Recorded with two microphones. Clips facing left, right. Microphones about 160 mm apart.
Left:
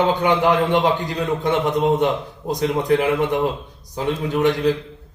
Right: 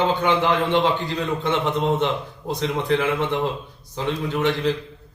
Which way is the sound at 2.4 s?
20° left (ahead or behind).